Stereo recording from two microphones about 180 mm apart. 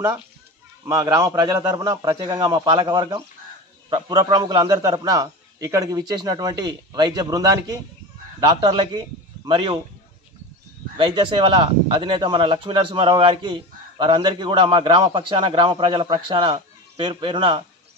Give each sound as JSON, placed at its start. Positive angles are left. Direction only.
{"t": 0.8, "sound": "a man's voice", "side_deg": -20}
{"t": 11.0, "sound": "a man's voice", "side_deg": -25}